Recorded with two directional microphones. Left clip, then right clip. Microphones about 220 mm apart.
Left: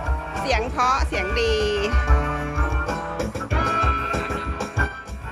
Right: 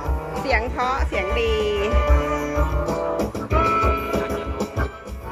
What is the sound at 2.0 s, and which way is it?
Music, 45° right (ahead or behind).